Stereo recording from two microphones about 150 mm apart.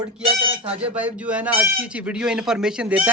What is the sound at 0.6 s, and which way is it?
Speech, 40° right (ahead or behind).